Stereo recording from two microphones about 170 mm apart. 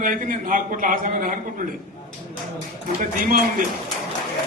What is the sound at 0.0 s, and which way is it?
A man's voice, 55° right (ahead or behind).